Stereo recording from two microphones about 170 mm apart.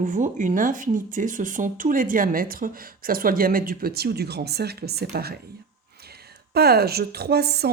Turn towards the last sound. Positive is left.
turn(degrees=-70)  # may be behind; listen again after turning